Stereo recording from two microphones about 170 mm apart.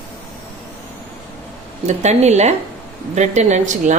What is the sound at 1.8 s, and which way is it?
A woman's voice, 40° right (ahead or behind).